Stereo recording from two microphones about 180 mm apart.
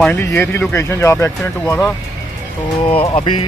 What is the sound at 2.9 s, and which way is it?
Speech, 30° left (ahead or behind).